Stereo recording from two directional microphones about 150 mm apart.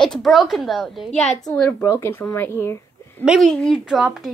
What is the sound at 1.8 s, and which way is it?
Speech, 15° left (ahead or behind).